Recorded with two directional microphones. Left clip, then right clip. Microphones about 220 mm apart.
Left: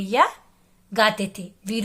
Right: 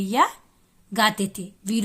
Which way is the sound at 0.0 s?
25° right (ahead or behind).